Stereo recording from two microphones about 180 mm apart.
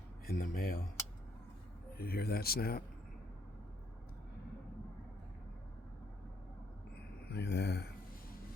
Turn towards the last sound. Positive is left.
turn(degrees=65)  # may be behind; listen again after turning